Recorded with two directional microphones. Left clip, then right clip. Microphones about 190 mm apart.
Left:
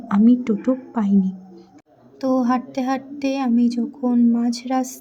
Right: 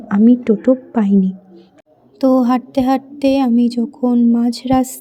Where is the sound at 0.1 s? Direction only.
15° right (ahead or behind).